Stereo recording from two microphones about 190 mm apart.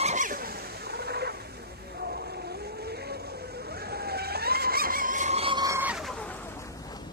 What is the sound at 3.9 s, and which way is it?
Vehicle, 55° right (ahead or behind).